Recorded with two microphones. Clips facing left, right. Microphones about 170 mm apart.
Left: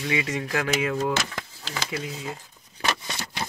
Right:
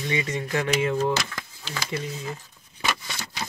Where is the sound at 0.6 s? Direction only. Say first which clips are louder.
Right 3 dB; centre (ahead or behind).